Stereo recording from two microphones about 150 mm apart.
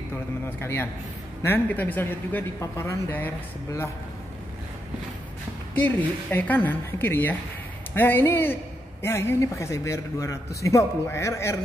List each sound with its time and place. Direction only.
0.6 s speech: 15° left (ahead or behind)
5.8 s a man's voice: 10° left (ahead or behind)